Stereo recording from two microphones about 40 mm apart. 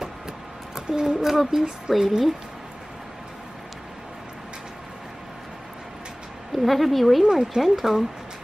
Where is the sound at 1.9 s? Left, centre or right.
Centre.